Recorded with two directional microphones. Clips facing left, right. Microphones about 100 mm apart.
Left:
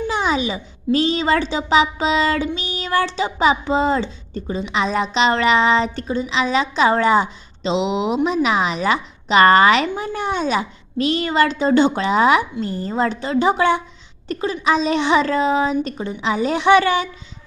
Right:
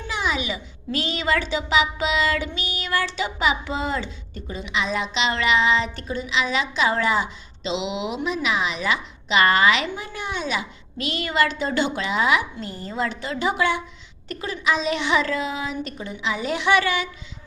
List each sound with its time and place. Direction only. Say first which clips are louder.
0.1 s a woman's voice: left 3 dB; 35° left (ahead or behind)